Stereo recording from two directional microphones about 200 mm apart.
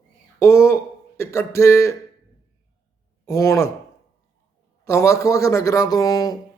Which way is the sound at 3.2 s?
15° left (ahead or behind).